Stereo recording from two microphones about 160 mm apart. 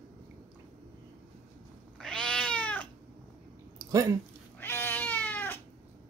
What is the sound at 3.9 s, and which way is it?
Speech, 20° right (ahead or behind).